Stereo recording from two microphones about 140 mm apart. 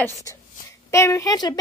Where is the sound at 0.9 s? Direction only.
20° left (ahead or behind).